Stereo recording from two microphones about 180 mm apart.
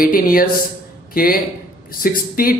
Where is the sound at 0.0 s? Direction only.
50° left (ahead or behind).